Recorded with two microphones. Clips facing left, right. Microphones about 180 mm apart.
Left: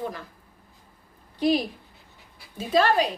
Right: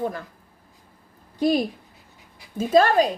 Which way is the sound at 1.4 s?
45° right (ahead or behind).